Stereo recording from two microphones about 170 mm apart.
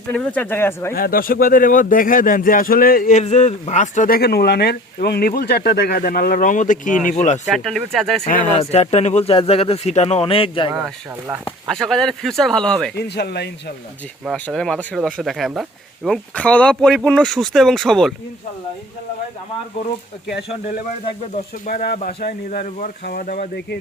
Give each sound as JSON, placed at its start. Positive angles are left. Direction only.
{"t": 0.1, "sound": "speech", "side_deg": 10}
{"t": 0.9, "sound": "speech", "side_deg": 60}
{"t": 7.4, "sound": "speech", "side_deg": 0}
{"t": 8.2, "sound": "speech", "side_deg": 45}
{"t": 10.8, "sound": "speech", "side_deg": 0}
{"t": 13.0, "sound": "speech", "side_deg": 75}
{"t": 14.3, "sound": "speech", "side_deg": 5}
{"t": 21.7, "sound": "speech", "side_deg": 55}